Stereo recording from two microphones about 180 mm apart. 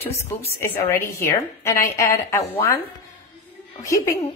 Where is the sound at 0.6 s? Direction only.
15° left (ahead or behind).